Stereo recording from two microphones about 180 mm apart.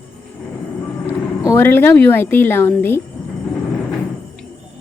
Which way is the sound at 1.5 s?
10° left (ahead or behind).